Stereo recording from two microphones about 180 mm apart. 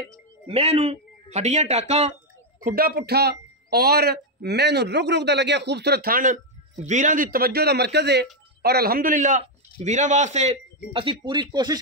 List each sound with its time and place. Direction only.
0.5 s a man's voice: 35° right (ahead or behind)
2.6 s speech: 55° right (ahead or behind)
6.8 s speech: 40° right (ahead or behind); by 8.3 s 70° right (ahead or behind)
8.6 s a man's voice: 60° right (ahead or behind); by 11.8 s 20° right (ahead or behind)